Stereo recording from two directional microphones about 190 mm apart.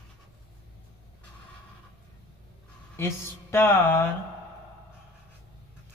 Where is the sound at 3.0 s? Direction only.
15° left (ahead or behind).